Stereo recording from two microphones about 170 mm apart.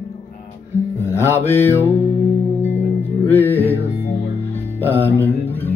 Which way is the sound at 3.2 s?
10° left (ahead or behind).